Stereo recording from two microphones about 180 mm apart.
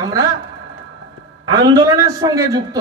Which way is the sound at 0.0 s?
20° right (ahead or behind).